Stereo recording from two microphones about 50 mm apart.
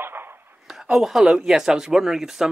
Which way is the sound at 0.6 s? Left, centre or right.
Centre.